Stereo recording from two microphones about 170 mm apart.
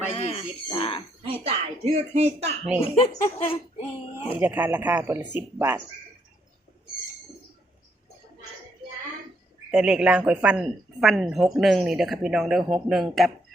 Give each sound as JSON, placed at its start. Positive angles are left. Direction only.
{"t": 0.1, "sound": "speech", "side_deg": 35}
{"t": 1.2, "sound": "speech", "side_deg": -35}
{"t": 2.8, "sound": "a child's voice", "side_deg": 35}
{"t": 4.4, "sound": "speech", "side_deg": -10}
{"t": 9.7, "sound": "speech", "side_deg": -5}